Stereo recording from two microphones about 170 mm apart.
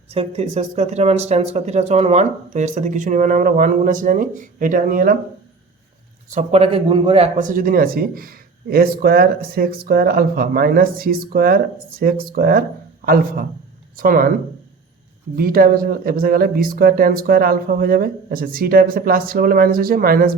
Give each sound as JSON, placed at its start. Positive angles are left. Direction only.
{"t": 0.1, "sound": "speech", "side_deg": -35}
{"t": 6.3, "sound": "speech", "side_deg": -35}
{"t": 13.9, "sound": "speech", "side_deg": -55}
{"t": 15.4, "sound": "speech", "side_deg": -55}